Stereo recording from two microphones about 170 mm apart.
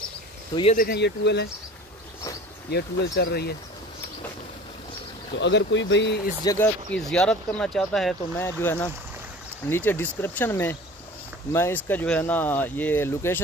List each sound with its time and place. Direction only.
0.7 s speech: 70° left (ahead or behind)
2.7 s speech: 70° left (ahead or behind)
5.4 s speech: 90° left
6.4 s speech: 20° left (ahead or behind)
6.9 s speech: 5° left (ahead or behind)
8.4 s speech: 15° left (ahead or behind)